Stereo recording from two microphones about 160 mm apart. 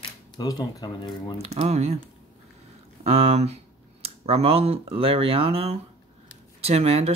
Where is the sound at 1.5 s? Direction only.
40° right (ahead or behind).